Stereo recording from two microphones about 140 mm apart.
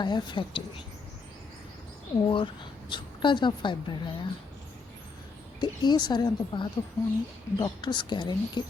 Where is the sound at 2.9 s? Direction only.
35° left (ahead or behind).